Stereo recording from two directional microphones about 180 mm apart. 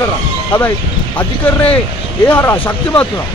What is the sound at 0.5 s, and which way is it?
Speech, 10° left (ahead or behind).